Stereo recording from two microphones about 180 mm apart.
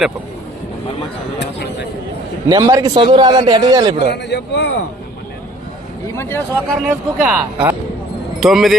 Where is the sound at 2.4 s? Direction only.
20° right (ahead or behind).